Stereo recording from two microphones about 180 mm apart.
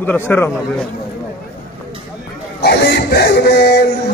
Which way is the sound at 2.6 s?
65° left (ahead or behind).